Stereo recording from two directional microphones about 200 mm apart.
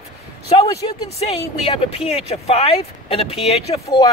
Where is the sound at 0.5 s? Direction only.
25° left (ahead or behind).